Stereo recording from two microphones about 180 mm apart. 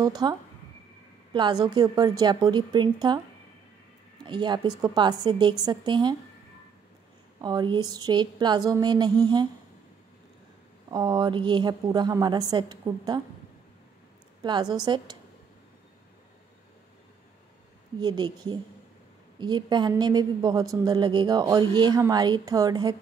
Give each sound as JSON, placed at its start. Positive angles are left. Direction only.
{"t": 0.0, "sound": "a woman's voice", "side_deg": -20}
{"t": 4.2, "sound": "a woman's voice", "side_deg": -25}
{"t": 7.4, "sound": "a woman's voice", "side_deg": -25}
{"t": 10.9, "sound": "a woman's voice", "side_deg": -25}
{"t": 14.4, "sound": "a woman's voice", "side_deg": -25}
{"t": 18.0, "sound": "a woman's voice", "side_deg": -25}